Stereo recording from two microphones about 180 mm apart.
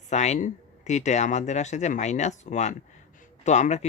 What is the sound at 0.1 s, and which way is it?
Speech, 40° left (ahead or behind).